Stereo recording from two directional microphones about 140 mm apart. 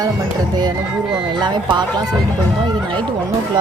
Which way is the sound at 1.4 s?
30° right (ahead or behind).